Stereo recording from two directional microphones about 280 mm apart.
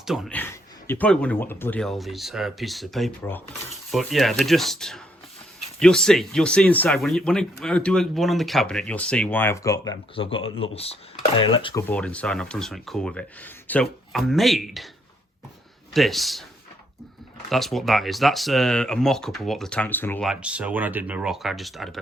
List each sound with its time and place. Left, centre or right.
0.0 s speech: centre
15.9 s speech: centre
17.5 s speech: centre